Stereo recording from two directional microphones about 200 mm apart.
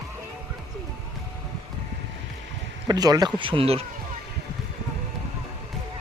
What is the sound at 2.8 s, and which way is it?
Speech, 20° right (ahead or behind).